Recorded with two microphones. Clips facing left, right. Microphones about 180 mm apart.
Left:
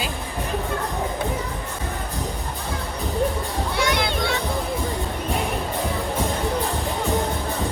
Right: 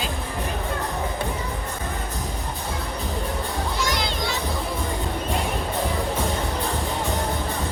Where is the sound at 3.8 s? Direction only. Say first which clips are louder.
Left 6 dB; 60° left (ahead or behind).